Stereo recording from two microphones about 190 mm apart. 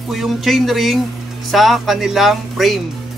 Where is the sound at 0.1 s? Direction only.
Centre (ahead or behind).